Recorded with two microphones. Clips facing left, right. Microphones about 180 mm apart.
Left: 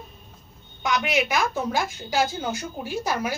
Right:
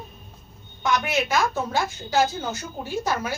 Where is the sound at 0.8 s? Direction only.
15° left (ahead or behind).